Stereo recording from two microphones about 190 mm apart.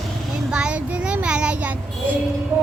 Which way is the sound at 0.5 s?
5° right (ahead or behind).